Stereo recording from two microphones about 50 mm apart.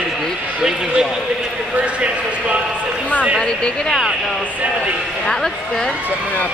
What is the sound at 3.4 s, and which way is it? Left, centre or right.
Speech, centre.